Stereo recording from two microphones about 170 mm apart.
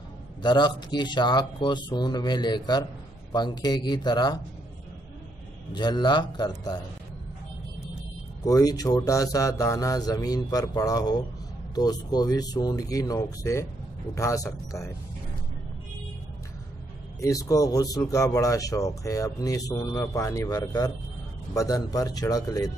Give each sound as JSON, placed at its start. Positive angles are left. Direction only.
{"t": 0.4, "sound": "speech", "side_deg": 25}
{"t": 5.7, "sound": "speech", "side_deg": 25}
{"t": 8.5, "sound": "speech", "side_deg": 20}
{"t": 17.2, "sound": "speech", "side_deg": 20}